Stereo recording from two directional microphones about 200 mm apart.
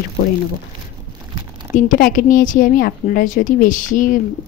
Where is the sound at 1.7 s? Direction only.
40° left (ahead or behind).